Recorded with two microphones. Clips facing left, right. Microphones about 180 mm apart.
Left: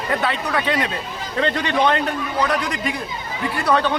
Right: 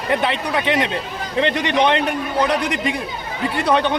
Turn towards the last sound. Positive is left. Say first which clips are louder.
# right 1 dB
turn(degrees=-20)  # may be behind; listen again after turning